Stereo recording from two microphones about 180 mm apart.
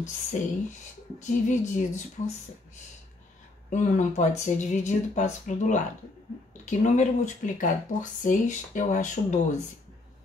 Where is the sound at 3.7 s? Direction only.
45° left (ahead or behind).